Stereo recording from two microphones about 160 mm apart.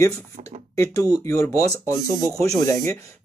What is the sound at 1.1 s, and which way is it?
Speech, 15° left (ahead or behind).